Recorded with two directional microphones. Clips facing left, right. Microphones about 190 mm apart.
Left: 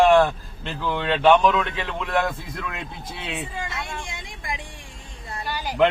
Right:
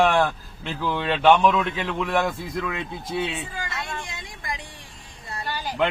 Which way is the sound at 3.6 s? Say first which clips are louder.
Left 1 dB; 25° left (ahead or behind).